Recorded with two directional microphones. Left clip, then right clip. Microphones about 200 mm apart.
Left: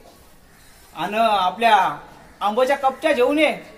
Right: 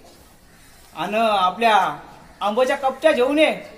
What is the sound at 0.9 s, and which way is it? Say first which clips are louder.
A man's voice: left 1 dB; centre (ahead or behind).